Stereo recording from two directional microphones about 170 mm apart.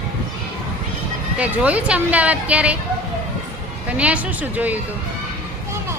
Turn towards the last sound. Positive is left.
turn(degrees=-10)  # may be behind; listen again after turning